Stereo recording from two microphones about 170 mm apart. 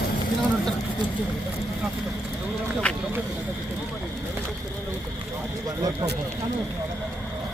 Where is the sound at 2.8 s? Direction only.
5° left (ahead or behind).